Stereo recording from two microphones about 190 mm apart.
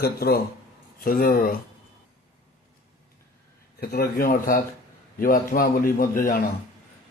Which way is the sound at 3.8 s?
50° left (ahead or behind).